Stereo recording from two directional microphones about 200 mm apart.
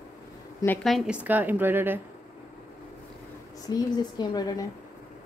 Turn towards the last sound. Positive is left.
turn(degrees=20)  # may be behind; listen again after turning